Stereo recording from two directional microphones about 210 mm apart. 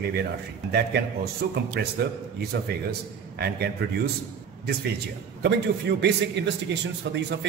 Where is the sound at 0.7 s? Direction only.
50° right (ahead or behind).